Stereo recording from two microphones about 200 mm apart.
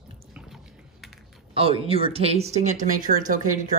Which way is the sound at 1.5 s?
30° right (ahead or behind).